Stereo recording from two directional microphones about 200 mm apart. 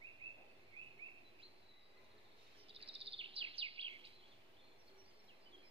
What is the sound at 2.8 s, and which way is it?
Bird vocalization, 25° right (ahead or behind).